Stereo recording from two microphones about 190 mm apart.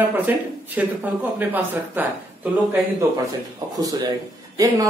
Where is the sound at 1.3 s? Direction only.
10° right (ahead or behind).